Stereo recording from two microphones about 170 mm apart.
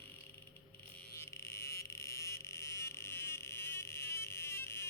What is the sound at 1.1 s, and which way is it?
Vehicle, 15° left (ahead or behind).